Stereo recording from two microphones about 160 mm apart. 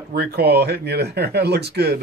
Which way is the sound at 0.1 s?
75° right (ahead or behind).